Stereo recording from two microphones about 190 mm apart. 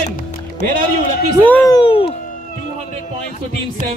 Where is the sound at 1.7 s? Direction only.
25° left (ahead or behind).